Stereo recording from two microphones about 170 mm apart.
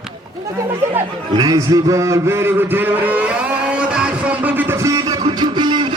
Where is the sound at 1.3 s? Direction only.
25° right (ahead or behind).